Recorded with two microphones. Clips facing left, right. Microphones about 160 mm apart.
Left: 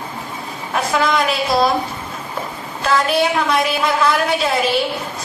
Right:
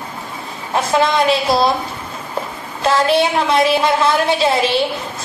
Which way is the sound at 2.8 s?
30° right (ahead or behind).